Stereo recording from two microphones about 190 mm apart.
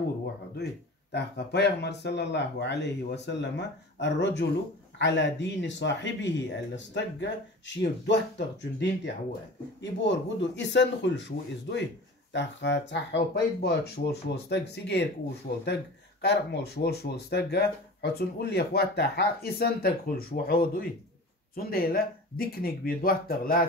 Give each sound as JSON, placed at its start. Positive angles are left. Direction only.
{"t": 1.1, "sound": "speech", "side_deg": 60}